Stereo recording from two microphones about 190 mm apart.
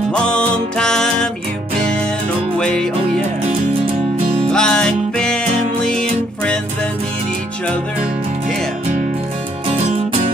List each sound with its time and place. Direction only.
0.1 s music: 5° left (ahead or behind)
2.6 s music: 5° left (ahead or behind)
4.5 s music: 5° left (ahead or behind)
9.7 s music: 30° right (ahead or behind)